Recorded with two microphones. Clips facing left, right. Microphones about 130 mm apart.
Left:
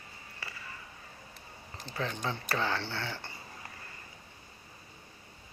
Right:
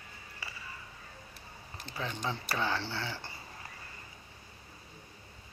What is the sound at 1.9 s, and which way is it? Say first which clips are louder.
Speech: left 2 dB; 15° right (ahead or behind).